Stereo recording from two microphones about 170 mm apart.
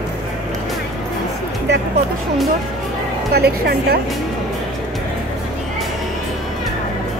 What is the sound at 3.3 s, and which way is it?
Speech, 65° right (ahead or behind).